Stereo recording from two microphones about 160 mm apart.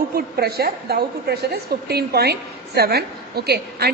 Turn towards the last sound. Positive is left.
turn(degrees=-80)